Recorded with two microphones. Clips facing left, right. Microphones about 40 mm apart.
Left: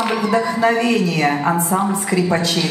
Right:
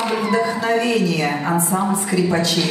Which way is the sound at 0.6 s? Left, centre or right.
Centre.